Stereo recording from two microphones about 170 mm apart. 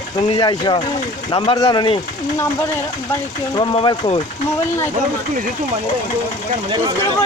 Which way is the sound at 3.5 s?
25° left (ahead or behind).